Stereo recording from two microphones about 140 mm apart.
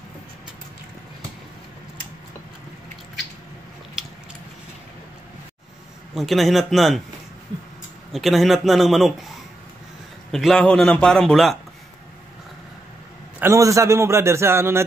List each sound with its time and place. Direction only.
6.1 s a man's voice: centre (ahead or behind)
8.1 s a man's voice: centre (ahead or behind)
10.3 s a man's voice: 5° left (ahead or behind)
13.4 s a man's voice: 20° right (ahead or behind)